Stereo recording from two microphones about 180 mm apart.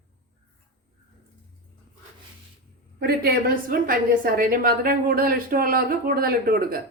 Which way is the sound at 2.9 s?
60° right (ahead or behind).